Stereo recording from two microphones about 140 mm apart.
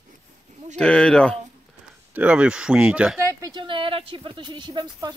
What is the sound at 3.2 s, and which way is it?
Speech, 20° right (ahead or behind).